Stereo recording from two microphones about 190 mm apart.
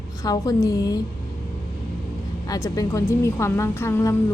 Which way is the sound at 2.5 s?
20° left (ahead or behind).